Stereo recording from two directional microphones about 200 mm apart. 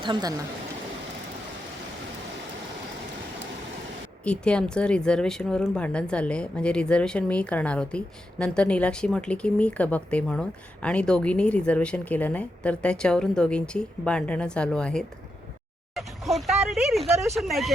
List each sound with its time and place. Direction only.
0.0 s speech: 20° right (ahead or behind)
4.2 s speech: 5° left (ahead or behind)